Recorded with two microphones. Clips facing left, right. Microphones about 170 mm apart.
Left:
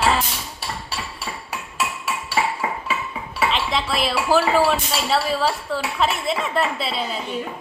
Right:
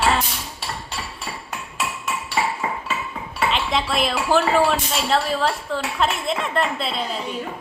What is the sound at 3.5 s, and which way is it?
Speech, centre (ahead or behind).